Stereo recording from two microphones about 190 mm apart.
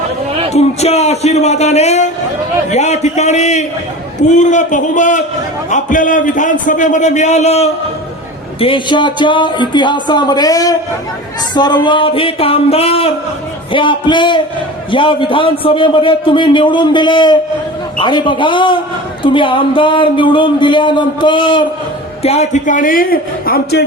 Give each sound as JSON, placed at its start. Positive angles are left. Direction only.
{"t": 0.5, "sound": "a man's voice", "side_deg": 35}